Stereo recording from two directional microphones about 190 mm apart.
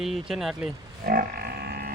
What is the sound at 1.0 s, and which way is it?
Grunt, 55° right (ahead or behind).